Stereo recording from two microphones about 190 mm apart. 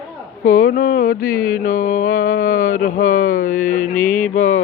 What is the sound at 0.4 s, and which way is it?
Mantra, 45° left (ahead or behind).